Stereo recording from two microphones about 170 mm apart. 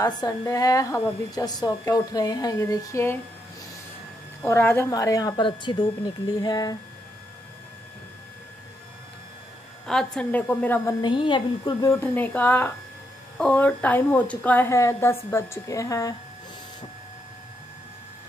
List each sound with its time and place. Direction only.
0.0 s a woman's voice: 20° left (ahead or behind)
4.4 s a woman's voice: 10° left (ahead or behind)
9.8 s a woman's voice: 5° left (ahead or behind)
11.0 s a woman's voice: 30° left (ahead or behind)
12.0 s a woman's voice: 10° left (ahead or behind)